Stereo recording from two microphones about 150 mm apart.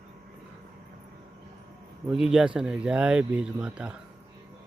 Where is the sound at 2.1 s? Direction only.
5° right (ahead or behind).